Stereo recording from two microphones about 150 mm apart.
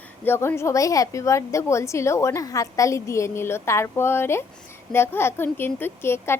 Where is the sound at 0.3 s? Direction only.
15° left (ahead or behind).